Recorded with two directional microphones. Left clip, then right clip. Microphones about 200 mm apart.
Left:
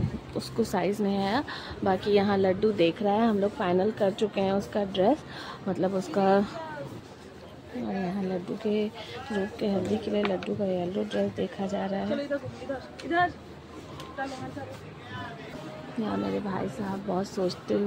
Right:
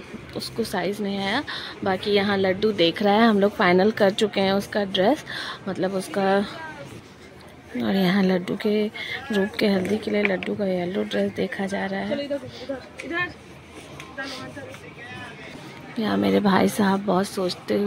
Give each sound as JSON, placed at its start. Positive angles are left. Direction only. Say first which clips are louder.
{"t": 0.3, "sound": "a woman's voice", "louder": "right 2 dB", "side_deg": 5}
{"t": 7.8, "sound": "speech", "louder": "right 10 dB", "side_deg": -20}
{"t": 16.0, "sound": "a woman's voice", "louder": "right 9 dB", "side_deg": -15}
{"t": 17.2, "sound": "a woman's voice", "louder": "right 4 dB", "side_deg": -5}